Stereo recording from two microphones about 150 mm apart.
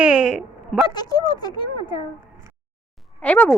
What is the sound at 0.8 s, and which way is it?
Speech, 30° left (ahead or behind).